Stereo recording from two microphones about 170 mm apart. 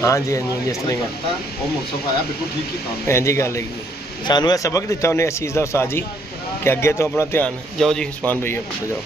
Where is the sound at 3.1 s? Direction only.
15° left (ahead or behind).